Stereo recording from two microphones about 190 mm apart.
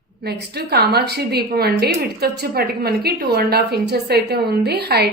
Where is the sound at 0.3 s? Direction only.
55° right (ahead or behind).